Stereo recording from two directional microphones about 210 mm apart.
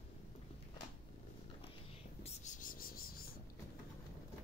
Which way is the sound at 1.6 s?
30° left (ahead or behind).